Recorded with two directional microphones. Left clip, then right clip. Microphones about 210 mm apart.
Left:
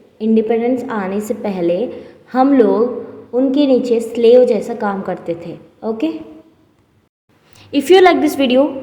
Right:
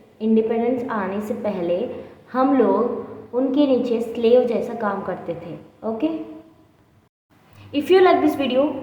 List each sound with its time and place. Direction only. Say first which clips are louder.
0.2 s a woman's voice: left 5 dB; 30° left (ahead or behind)
7.6 s a woman's voice: left 6 dB; 35° left (ahead or behind)